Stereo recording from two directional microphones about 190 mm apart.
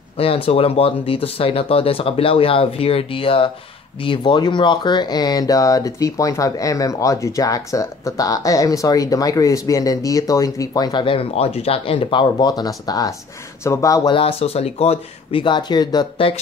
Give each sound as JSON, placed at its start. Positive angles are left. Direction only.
{"t": 0.2, "sound": "speech", "side_deg": 30}